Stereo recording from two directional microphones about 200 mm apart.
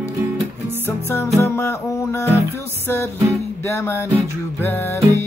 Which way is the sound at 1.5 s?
15° left (ahead or behind).